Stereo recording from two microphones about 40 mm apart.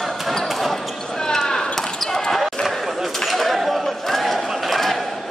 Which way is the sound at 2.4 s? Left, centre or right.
Centre.